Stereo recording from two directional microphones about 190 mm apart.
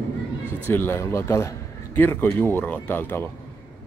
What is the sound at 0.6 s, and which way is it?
A man's voice, 10° left (ahead or behind).